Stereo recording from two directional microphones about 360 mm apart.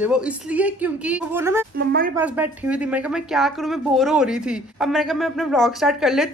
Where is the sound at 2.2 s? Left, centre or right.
Centre.